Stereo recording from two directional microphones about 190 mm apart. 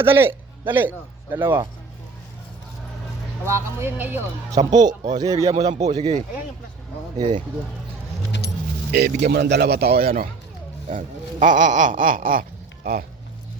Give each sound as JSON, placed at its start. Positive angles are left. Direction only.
{"t": 0.0, "sound": "a man's voice", "side_deg": -10}
{"t": 3.4, "sound": "speech", "side_deg": -15}
{"t": 4.8, "sound": "speech", "side_deg": -20}
{"t": 5.7, "sound": "speech", "side_deg": -35}
{"t": 8.3, "sound": "keys jangling", "side_deg": 65}
{"t": 8.9, "sound": "speech", "side_deg": -55}